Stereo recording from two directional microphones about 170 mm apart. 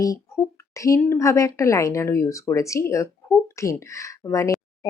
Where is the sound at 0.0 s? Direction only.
20° left (ahead or behind).